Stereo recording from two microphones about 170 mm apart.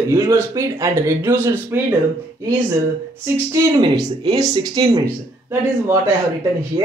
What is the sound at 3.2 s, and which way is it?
Speech, 25° right (ahead or behind).